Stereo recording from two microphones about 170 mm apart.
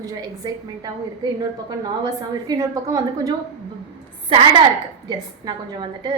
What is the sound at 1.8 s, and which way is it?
A woman's voice, 20° right (ahead or behind).